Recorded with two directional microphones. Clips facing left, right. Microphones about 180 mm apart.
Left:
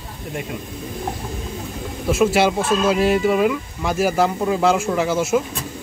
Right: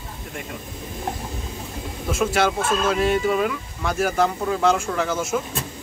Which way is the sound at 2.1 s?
5° left (ahead or behind).